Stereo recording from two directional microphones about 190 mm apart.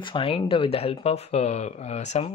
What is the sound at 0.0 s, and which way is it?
Speech, 25° left (ahead or behind).